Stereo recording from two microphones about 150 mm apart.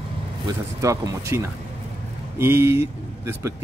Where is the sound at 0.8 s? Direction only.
20° right (ahead or behind).